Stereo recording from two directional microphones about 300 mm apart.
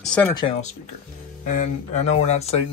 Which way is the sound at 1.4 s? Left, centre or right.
Left.